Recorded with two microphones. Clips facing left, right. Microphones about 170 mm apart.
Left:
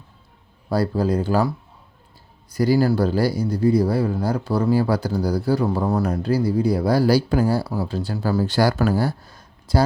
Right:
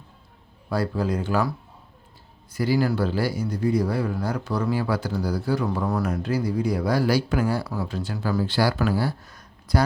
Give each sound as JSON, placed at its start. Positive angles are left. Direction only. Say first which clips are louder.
{"t": 0.7, "sound": "speech", "louder": "left 4 dB", "side_deg": 35}
{"t": 2.5, "sound": "speech", "louder": "left 5 dB", "side_deg": 40}
{"t": 9.2, "sound": "a sound", "louder": "left 1 dB", "side_deg": 25}